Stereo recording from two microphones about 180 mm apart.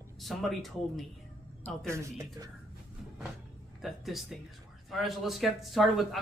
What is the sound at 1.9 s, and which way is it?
Speech, 20° right (ahead or behind).